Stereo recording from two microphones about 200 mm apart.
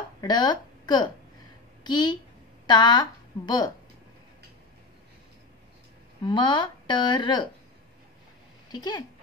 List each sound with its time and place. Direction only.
0.2 s a woman's voice: 20° left (ahead or behind)
6.2 s speech: 25° left (ahead or behind)
8.7 s speech: 20° left (ahead or behind)